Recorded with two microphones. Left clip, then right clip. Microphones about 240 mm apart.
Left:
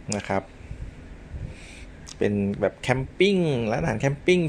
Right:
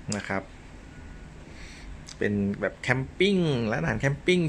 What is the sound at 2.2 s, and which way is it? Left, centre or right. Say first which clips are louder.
Speech: left 4 dB; centre.